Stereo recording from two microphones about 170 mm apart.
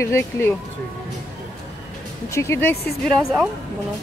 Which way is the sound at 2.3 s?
15° left (ahead or behind).